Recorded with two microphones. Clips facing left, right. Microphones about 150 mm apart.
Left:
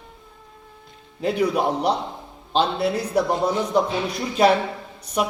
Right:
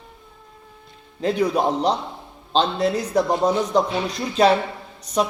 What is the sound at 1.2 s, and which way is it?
Speech, 10° left (ahead or behind).